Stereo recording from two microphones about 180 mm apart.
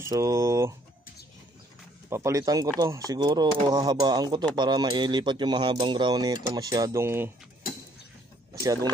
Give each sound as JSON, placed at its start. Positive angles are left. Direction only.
{"t": 0.0, "sound": "speech", "side_deg": -20}
{"t": 2.0, "sound": "speech", "side_deg": -15}
{"t": 8.5, "sound": "speech", "side_deg": -20}